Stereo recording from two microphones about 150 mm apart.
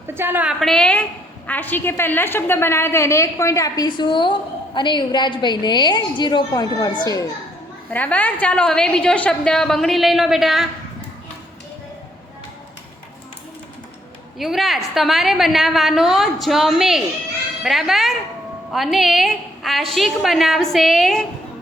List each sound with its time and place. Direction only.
0.1 s a woman's voice: 15° right (ahead or behind)
0.6 s a woman's voice: 5° left (ahead or behind); by 7.3 s 30° left (ahead or behind)
7.9 s a woman's voice: 10° left (ahead or behind)
14.3 s a woman's voice: centre (ahead or behind)